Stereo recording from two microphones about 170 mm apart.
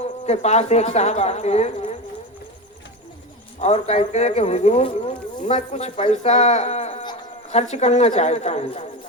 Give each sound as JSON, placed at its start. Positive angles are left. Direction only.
{"t": 0.0, "sound": "speech", "side_deg": 40}
{"t": 3.6, "sound": "speech", "side_deg": 40}